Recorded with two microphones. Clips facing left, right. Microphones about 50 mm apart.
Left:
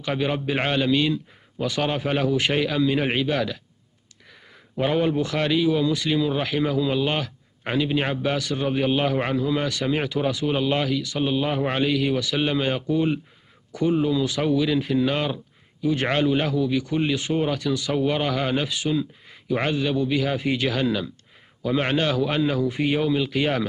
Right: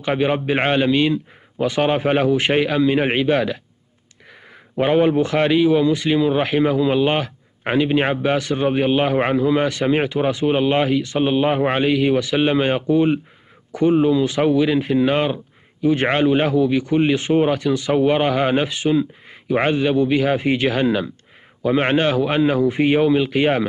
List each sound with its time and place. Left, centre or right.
0.0 s a man's voice: right
4.7 s a man's voice: right